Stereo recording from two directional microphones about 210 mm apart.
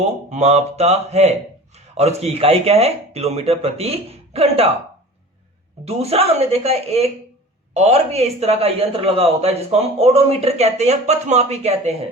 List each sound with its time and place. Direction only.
0.3 s speech: 30° right (ahead or behind)
5.8 s speech: 30° right (ahead or behind)